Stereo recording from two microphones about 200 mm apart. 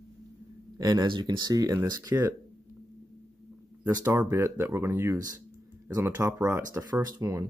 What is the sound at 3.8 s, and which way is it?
Speech, 10° right (ahead or behind).